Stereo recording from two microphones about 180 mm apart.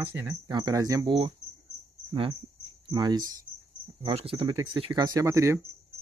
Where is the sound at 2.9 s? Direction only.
25° right (ahead or behind).